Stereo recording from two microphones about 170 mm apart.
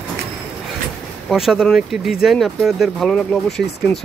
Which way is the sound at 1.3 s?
5° right (ahead or behind).